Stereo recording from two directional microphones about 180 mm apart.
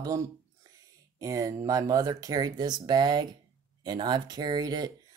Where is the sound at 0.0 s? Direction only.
20° right (ahead or behind).